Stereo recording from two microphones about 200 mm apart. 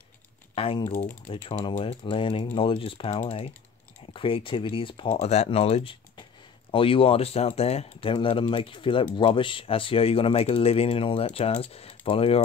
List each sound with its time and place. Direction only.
0.6 s speech: 25° left (ahead or behind)